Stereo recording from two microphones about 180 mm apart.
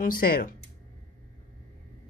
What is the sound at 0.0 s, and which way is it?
Speech, 55° left (ahead or behind).